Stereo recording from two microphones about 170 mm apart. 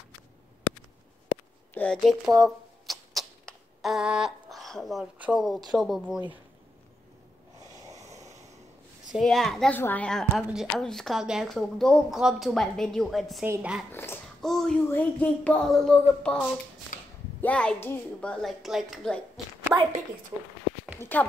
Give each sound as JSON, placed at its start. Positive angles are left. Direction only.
{"t": 1.7, "sound": "a sound", "side_deg": 10}
{"t": 2.0, "sound": "a sound", "side_deg": 0}
{"t": 5.7, "sound": "a woman's voice", "side_deg": 0}
{"t": 9.1, "sound": "a woman's voice", "side_deg": 0}
{"t": 13.9, "sound": "dog", "side_deg": 15}
{"t": 14.4, "sound": "a woman's voice", "side_deg": 0}
{"t": 16.9, "sound": "a sound", "side_deg": 50}
{"t": 17.4, "sound": "a woman's voice", "side_deg": 5}
{"t": 19.7, "sound": "speech", "side_deg": -10}
{"t": 21.0, "sound": "speech", "side_deg": 10}